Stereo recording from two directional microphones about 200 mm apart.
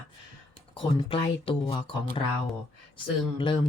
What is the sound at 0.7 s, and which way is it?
Speech, 25° left (ahead or behind).